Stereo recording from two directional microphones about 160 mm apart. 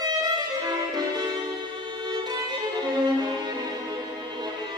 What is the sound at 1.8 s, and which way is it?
Violin, 25° right (ahead or behind).